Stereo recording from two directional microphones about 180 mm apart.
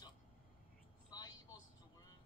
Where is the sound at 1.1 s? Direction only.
20° left (ahead or behind).